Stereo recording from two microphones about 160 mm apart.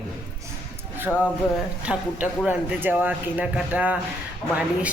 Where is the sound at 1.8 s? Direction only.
10° right (ahead or behind).